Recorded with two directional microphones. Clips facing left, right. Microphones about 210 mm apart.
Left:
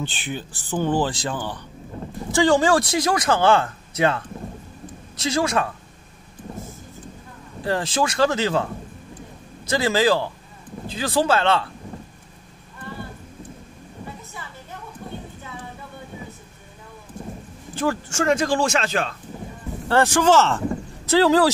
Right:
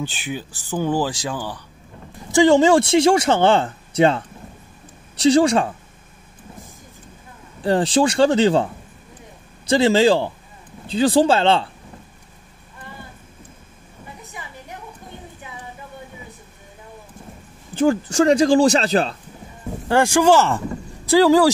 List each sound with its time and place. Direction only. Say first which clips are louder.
0.0 s speech: right 2 dB; 10° right (ahead or behind)
2.3 s speech: right 4 dB; 20° right (ahead or behind)
7.6 s speech: right 6 dB; 30° right (ahead or behind)
9.7 s speech: right 5 dB; 25° right (ahead or behind)
14.3 s a sound: right 1 dB; 15° right (ahead or behind)
18.0 s speech: right 6 dB; 35° right (ahead or behind)
19.9 s speech: right 2 dB; 10° right (ahead or behind)